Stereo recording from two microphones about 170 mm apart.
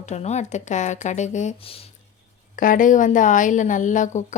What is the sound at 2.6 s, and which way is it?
A woman's voice, 50° left (ahead or behind).